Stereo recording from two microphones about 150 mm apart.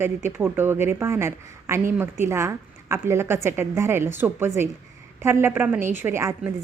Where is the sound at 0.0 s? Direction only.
15° right (ahead or behind).